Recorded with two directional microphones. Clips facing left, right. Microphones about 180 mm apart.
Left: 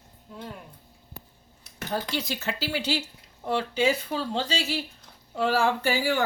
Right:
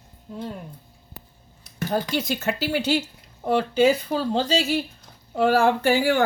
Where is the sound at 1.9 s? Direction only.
50° right (ahead or behind).